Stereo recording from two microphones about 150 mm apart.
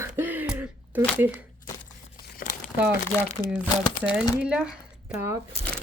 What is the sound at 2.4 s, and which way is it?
Crumpling, 70° left (ahead or behind).